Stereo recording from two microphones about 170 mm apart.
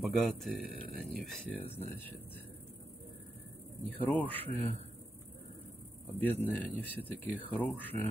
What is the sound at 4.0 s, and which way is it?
Speech, 10° left (ahead or behind).